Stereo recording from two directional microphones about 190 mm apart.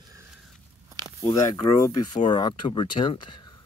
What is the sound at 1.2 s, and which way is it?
Speech, 15° left (ahead or behind).